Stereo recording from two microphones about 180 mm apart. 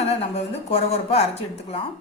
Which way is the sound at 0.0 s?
35° left (ahead or behind).